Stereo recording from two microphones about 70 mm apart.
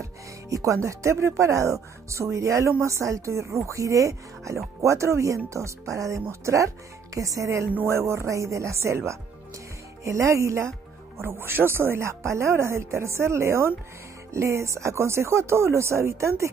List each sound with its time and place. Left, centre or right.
0.0 s music: right
0.8 s speech: right